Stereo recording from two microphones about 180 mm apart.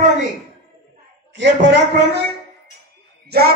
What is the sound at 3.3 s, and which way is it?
Speech, 65° right (ahead or behind).